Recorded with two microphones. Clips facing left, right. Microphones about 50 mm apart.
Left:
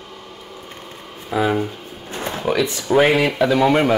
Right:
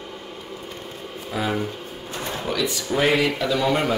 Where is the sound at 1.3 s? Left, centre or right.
Centre.